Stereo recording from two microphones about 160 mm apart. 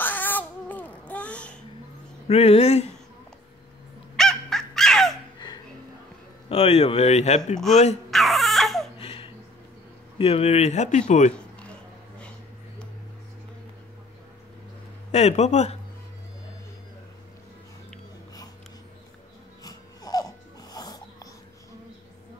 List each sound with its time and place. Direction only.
0.0 s baby cry: 10° left (ahead or behind)
2.2 s speech: 40° left (ahead or behind)
4.2 s dog: centre (ahead or behind)
6.5 s speech: 35° left (ahead or behind)
8.1 s baby cry: centre (ahead or behind)
8.9 s a sound: 35° left (ahead or behind)
10.1 s a man's voice: 40° left (ahead or behind)
12.2 s a sound: 5° left (ahead or behind)
15.0 s a man's voice: 45° left (ahead or behind)
19.6 s music: 25° left (ahead or behind)